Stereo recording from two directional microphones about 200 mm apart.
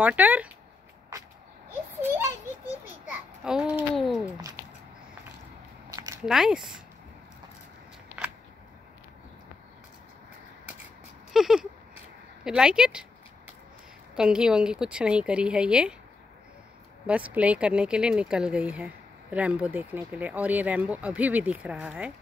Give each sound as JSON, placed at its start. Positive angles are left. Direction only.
{"t": 0.0, "sound": "speech", "side_deg": -10}
{"t": 1.7, "sound": "a sound", "side_deg": -10}
{"t": 3.1, "sound": "a child's voice", "side_deg": -5}
{"t": 5.9, "sound": "a sound", "side_deg": -20}
{"t": 6.2, "sound": "speech", "side_deg": -5}
{"t": 11.3, "sound": "a sound", "side_deg": 0}
{"t": 12.4, "sound": "speech", "side_deg": -5}
{"t": 14.1, "sound": "speech", "side_deg": -5}
{"t": 17.0, "sound": "speech", "side_deg": -5}